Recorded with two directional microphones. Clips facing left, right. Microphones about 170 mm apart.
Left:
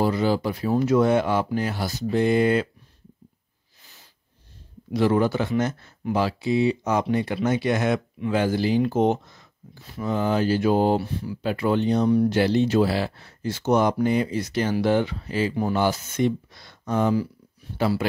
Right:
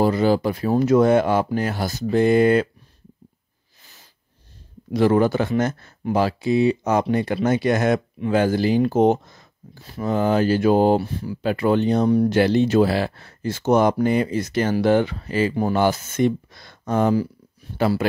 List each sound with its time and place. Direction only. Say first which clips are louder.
0.0 s speech: right 4 dB; 50° right (ahead or behind)
3.8 s a sound: right 1 dB; 45° right (ahead or behind)
4.9 s speech: right 3 dB; 50° right (ahead or behind)